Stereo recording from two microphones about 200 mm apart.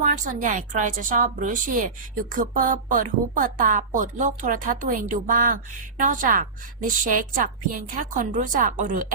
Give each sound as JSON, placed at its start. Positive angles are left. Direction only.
{"t": 0.0, "sound": "a woman's voice", "side_deg": -40}